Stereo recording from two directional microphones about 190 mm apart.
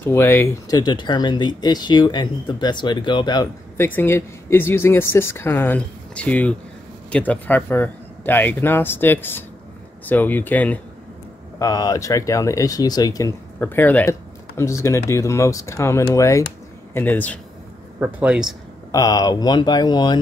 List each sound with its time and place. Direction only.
0.0 s speech: 10° left (ahead or behind)
11.6 s speech: 20° left (ahead or behind)
18.0 s speech: 5° right (ahead or behind)
18.9 s speech: 20° left (ahead or behind)